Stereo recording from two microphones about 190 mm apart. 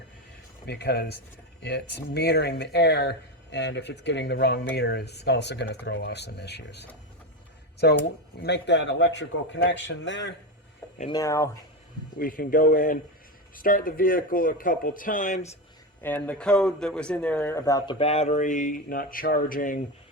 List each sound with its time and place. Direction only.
0.7 s speech: 60° left (ahead or behind)
11.1 s speech: 15° left (ahead or behind)
12.2 s speech: 50° left (ahead or behind)
16.0 s speech: 10° left (ahead or behind)
18.0 s speech: 35° left (ahead or behind)